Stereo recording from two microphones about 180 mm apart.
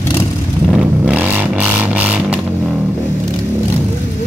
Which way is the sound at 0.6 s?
5° right (ahead or behind).